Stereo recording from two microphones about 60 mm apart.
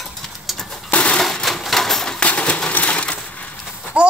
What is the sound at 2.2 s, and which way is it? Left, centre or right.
Coin, left.